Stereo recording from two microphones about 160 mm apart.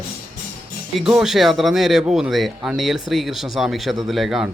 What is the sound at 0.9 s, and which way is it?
A man's voice, 5° right (ahead or behind).